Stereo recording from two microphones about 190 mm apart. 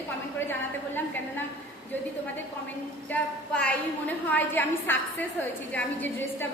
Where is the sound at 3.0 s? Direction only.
5° left (ahead or behind).